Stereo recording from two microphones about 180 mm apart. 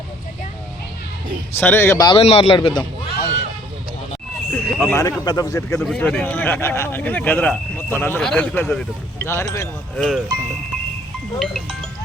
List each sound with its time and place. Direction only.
1.5 s speech: 15° left (ahead or behind)
2.1 s a man's voice: 35° left (ahead or behind)
4.5 s speech: 10° left (ahead or behind)
5.8 s speech: 5° left (ahead or behind)
10.0 s speech: centre (ahead or behind)
11.3 s speech: centre (ahead or behind)